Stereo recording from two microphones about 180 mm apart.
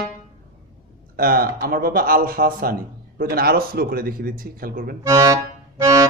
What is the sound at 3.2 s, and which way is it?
Speech, 55° right (ahead or behind).